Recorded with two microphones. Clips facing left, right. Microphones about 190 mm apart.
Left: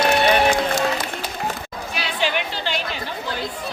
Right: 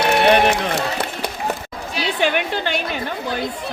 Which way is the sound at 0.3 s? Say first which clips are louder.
Right 2 dB; 65° right (ahead or behind).